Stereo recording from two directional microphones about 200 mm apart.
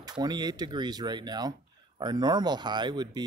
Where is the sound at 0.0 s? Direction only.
20° right (ahead or behind).